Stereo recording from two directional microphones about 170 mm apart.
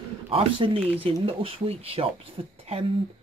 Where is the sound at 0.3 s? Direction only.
35° right (ahead or behind).